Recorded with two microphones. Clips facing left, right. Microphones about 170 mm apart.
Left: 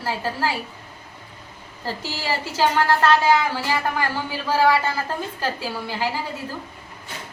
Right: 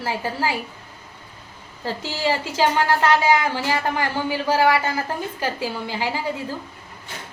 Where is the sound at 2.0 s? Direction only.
15° right (ahead or behind).